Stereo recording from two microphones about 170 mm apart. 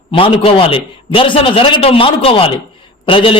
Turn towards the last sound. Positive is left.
turn(degrees=30)  # may be behind; listen again after turning